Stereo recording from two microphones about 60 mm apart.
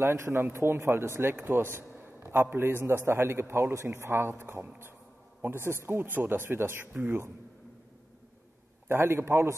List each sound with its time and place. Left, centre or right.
0.0 s a man's voice: right
5.7 s speech: right
8.8 s speech: right